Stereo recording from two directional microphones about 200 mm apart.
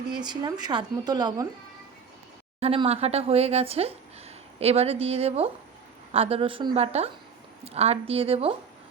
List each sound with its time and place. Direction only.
0.1 s speech: 20° right (ahead or behind)
2.6 s speech: 30° right (ahead or behind)